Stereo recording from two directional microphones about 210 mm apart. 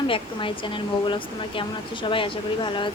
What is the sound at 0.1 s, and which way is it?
Speech, 25° left (ahead or behind).